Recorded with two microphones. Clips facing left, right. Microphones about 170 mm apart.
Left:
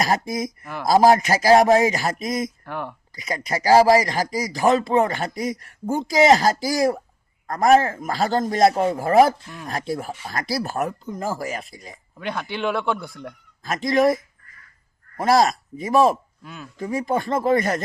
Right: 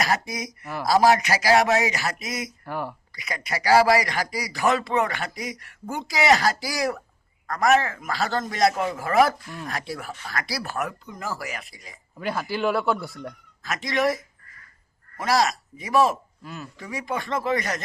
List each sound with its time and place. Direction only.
0.0 s speech: 45° left (ahead or behind)
0.6 s a man's voice: 5° right (ahead or behind)
1.0 s speech: 45° left (ahead or behind)
2.6 s a man's voice: 5° right (ahead or behind)
3.2 s a man's voice: 40° left (ahead or behind)
7.4 s a man's voice: 30° left (ahead or behind)
8.1 s a man's voice: 45° left (ahead or behind)
10.1 s a man's voice: 30° left (ahead or behind)
12.1 s a man's voice: 5° right (ahead or behind)
13.7 s speech: 45° left (ahead or behind)
15.2 s speech: 50° left (ahead or behind)
16.4 s a man's voice: centre (ahead or behind)
16.7 s speech: 40° left (ahead or behind)